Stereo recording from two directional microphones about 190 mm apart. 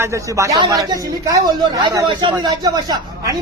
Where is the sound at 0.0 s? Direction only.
15° right (ahead or behind).